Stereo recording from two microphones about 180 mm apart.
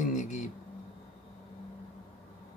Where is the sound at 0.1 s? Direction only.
45° left (ahead or behind).